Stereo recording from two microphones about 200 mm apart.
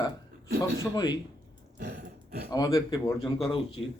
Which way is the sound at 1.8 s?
50° right (ahead or behind).